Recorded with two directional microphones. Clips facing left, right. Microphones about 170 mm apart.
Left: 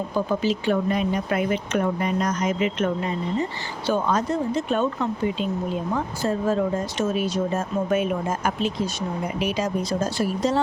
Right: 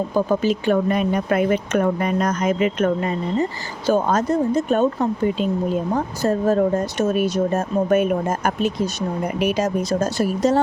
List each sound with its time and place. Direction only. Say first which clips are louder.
0.3 s speech: right 4 dB; 50° right (ahead or behind)